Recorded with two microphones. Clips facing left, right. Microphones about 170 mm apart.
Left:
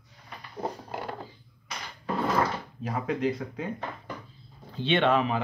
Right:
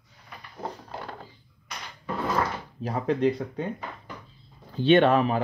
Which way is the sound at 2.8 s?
35° right (ahead or behind).